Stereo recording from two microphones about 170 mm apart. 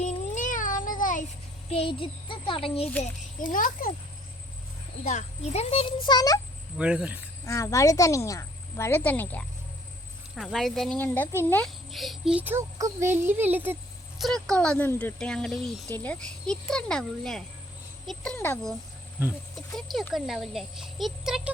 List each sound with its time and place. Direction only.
0.0 s cat: 50° left (ahead or behind)
1.7 s a child's voice: 30° left (ahead or behind)
3.0 s a child's voice: 50° left (ahead or behind)
5.0 s a child's voice: 40° left (ahead or behind); by 6.4 s 20° left (ahead or behind)
6.7 s speech: 5° right (ahead or behind)
7.4 s a woman's voice: 20° left (ahead or behind)
11.9 s speech: centre (ahead or behind)
14.2 s speech: centre (ahead or behind)
19.2 s speech: centre (ahead or behind)